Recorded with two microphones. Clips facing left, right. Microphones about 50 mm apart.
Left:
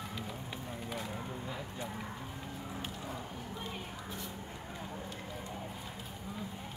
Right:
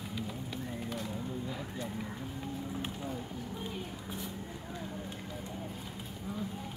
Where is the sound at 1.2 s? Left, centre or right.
Left.